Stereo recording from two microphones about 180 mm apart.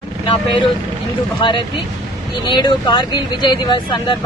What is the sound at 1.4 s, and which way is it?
Speech, 25° left (ahead or behind).